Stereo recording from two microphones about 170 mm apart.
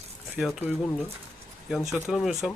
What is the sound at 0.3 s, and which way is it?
Speech, centre (ahead or behind).